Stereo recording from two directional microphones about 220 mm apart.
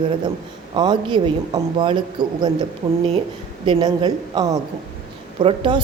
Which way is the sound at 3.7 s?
20° right (ahead or behind).